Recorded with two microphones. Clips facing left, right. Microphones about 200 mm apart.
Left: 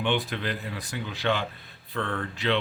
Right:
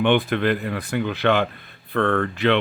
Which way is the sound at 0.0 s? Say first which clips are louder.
Right 9 dB; 60° right (ahead or behind).